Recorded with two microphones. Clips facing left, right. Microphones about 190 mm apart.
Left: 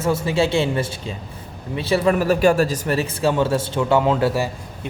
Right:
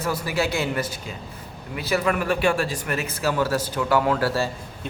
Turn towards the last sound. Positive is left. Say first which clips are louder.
# left 3 dB
turn(degrees=20)  # may be behind; listen again after turning